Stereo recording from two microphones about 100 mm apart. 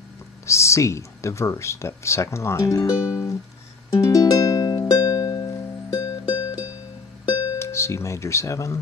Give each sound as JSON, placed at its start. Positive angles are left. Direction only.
{"t": 0.5, "sound": "speech", "side_deg": 30}
{"t": 3.9, "sound": "music", "side_deg": 35}
{"t": 7.5, "sound": "speech", "side_deg": 25}